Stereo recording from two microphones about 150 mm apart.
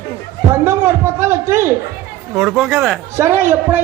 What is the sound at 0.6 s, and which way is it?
A man's voice, 15° right (ahead or behind).